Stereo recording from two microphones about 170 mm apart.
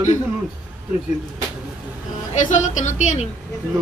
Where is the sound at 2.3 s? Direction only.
45° left (ahead or behind).